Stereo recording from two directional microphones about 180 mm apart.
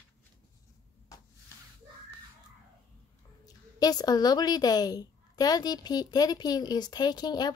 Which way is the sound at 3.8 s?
20° left (ahead or behind).